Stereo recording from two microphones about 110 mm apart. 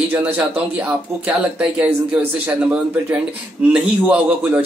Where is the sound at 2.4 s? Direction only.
10° right (ahead or behind).